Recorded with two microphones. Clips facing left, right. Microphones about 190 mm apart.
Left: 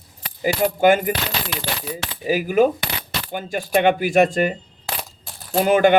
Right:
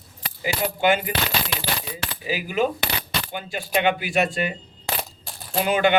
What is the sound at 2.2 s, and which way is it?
Speech, 45° left (ahead or behind).